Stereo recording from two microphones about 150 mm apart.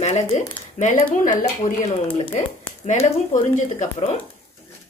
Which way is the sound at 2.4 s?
55° left (ahead or behind).